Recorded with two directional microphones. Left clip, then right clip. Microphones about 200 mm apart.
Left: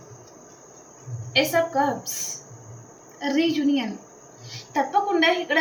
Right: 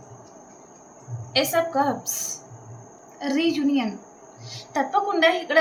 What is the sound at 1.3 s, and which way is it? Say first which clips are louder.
Speech: left 1 dB; 20° right (ahead or behind).